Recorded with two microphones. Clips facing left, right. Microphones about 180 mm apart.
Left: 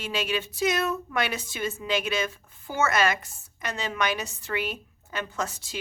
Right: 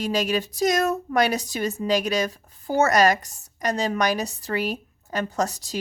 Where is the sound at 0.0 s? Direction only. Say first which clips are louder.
Right 6 dB; 40° right (ahead or behind).